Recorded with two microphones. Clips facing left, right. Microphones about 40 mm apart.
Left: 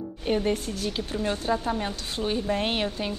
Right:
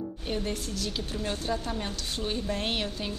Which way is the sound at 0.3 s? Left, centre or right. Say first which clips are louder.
Left 8 dB; left.